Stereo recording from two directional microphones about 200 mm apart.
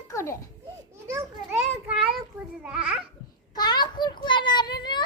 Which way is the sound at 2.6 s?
5° right (ahead or behind).